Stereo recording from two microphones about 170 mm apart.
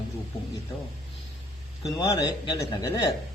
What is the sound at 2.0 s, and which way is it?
A man's voice, 20° left (ahead or behind).